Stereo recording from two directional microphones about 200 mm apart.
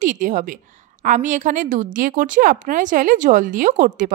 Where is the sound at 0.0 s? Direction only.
40° right (ahead or behind).